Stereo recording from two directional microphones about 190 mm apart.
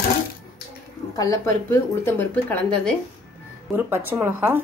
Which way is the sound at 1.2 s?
15° left (ahead or behind).